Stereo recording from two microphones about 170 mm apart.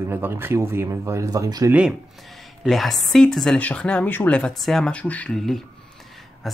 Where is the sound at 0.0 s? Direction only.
15° right (ahead or behind).